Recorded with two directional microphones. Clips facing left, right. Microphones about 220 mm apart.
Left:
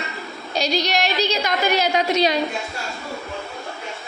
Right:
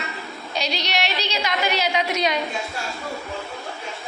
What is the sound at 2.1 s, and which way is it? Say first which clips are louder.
Speech: left 4 dB; 35° left (ahead or behind).